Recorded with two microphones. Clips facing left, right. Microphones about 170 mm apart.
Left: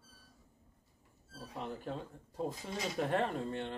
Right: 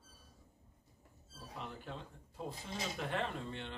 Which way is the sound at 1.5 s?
40° left (ahead or behind).